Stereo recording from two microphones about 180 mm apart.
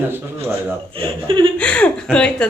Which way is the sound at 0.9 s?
30° right (ahead or behind).